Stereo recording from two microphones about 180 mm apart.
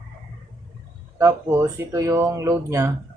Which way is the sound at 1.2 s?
15° right (ahead or behind).